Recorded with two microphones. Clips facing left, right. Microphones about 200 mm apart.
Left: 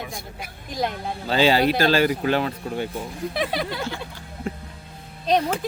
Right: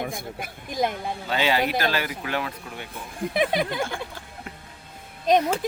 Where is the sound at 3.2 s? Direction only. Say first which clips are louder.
Right 4 dB; 50° right (ahead or behind).